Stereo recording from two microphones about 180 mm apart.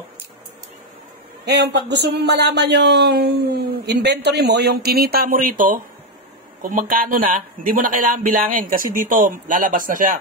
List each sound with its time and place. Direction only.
1.4 s speech: 65° right (ahead or behind); by 10.1 s 50° right (ahead or behind)